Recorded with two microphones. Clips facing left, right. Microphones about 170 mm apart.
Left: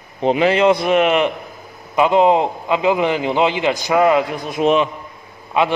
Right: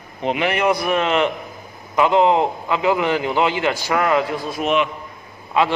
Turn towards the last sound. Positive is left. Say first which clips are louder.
# left 1 dB
turn(degrees=20)  # may be behind; listen again after turning